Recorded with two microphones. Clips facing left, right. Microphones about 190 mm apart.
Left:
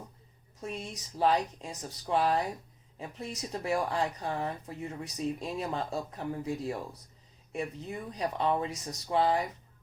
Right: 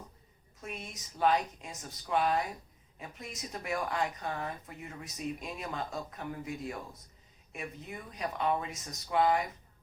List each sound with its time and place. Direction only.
0.6 s speech: 30° left (ahead or behind)